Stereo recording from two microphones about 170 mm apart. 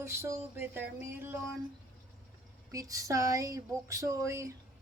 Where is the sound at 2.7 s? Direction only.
20° right (ahead or behind).